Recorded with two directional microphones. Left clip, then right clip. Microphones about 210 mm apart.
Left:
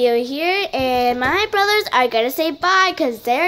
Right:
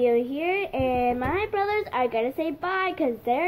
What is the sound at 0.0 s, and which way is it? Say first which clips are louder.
A child's voice: left 6 dB; 15° left (ahead or behind).